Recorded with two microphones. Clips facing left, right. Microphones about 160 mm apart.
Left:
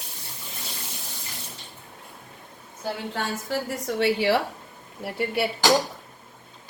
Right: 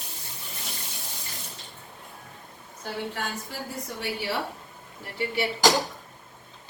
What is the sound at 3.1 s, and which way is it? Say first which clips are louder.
A woman's voice: left 6 dB; 90° left.